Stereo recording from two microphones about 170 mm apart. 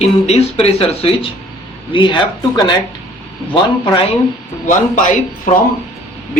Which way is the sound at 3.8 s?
30° left (ahead or behind).